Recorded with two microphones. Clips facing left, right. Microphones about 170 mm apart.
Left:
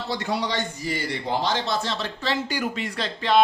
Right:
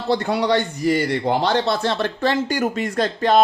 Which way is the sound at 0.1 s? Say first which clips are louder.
Right 9 dB; 60° right (ahead or behind).